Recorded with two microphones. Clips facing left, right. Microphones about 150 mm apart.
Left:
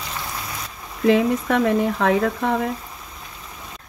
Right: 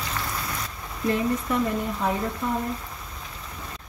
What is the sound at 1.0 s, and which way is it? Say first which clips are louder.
Speech: left 7 dB; 90° left.